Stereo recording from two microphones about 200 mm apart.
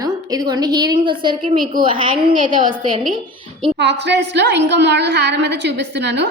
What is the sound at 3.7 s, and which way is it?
A woman's voice, 60° right (ahead or behind).